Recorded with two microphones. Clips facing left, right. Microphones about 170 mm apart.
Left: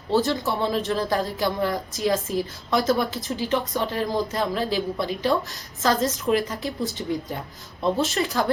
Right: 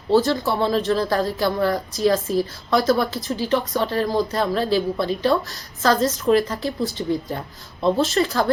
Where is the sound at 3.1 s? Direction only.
15° left (ahead or behind).